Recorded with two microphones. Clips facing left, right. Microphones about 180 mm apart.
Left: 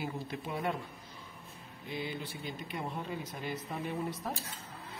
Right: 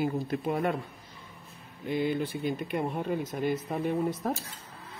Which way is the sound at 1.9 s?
55° right (ahead or behind).